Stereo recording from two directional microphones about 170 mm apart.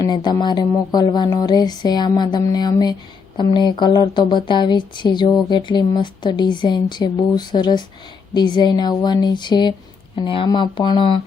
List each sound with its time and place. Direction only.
0.0 s speech: 25° left (ahead or behind)